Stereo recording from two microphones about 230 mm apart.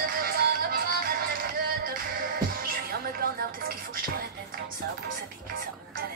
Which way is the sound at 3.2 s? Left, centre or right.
Right.